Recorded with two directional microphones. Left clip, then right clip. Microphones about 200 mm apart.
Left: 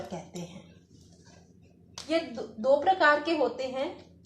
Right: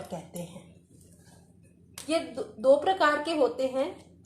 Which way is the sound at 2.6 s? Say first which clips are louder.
Even; 35° right (ahead or behind).